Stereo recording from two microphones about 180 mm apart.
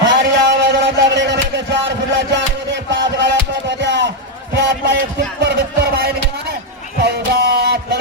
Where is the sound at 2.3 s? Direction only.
80° right.